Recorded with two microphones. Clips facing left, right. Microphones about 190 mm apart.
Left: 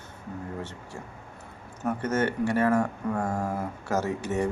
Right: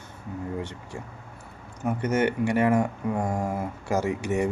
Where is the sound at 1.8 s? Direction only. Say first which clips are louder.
Right 2 dB; 15° right (ahead or behind).